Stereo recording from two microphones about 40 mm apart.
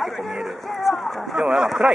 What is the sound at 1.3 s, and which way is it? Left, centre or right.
Speech, centre.